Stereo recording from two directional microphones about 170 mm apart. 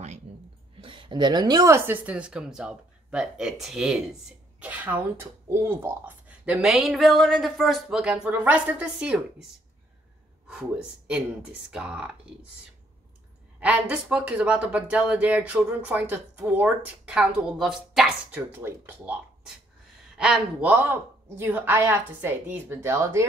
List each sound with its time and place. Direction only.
0.3 s a sound: 35° right (ahead or behind)
0.7 s speech: 30° right (ahead or behind); by 9.5 s 5° right (ahead or behind)
10.5 s speech: 5° right (ahead or behind)
13.6 s speech: 10° right (ahead or behind)